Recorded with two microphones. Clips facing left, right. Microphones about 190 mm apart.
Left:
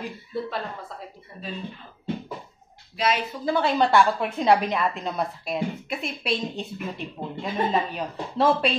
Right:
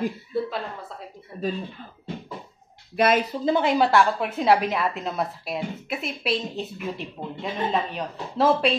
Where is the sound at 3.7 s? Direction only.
5° right (ahead or behind).